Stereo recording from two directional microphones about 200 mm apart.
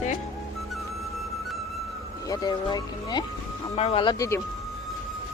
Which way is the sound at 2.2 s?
20° left (ahead or behind).